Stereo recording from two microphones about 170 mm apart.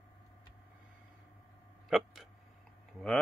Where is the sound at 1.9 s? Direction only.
Centre (ahead or behind).